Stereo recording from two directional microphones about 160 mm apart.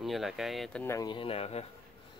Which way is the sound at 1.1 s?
35° left (ahead or behind).